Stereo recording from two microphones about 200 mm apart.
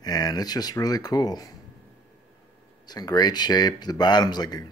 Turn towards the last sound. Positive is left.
turn(degrees=20)  # may be behind; listen again after turning